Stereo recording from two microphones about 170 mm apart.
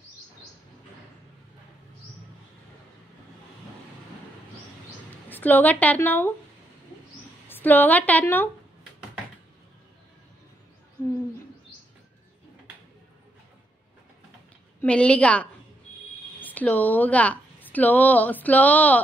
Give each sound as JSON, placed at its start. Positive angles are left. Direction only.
{"t": 5.3, "sound": "a woman's voice", "side_deg": 10}
{"t": 7.4, "sound": "a woman's voice", "side_deg": 10}
{"t": 14.8, "sound": "a woman's voice", "side_deg": 5}